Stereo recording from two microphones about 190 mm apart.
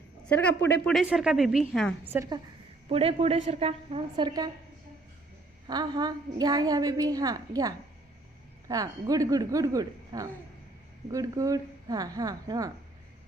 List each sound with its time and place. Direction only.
0.3 s a woman's voice: 10° left (ahead or behind)
0.9 s a woman's voice: 5° right (ahead or behind)
2.1 s speech: 15° right (ahead or behind)
2.9 s a woman's voice: 30° right (ahead or behind)
5.6 s a woman's voice: 20° right (ahead or behind)